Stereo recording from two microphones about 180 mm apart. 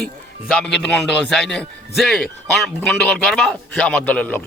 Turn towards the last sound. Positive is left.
turn(degrees=10)  # may be behind; listen again after turning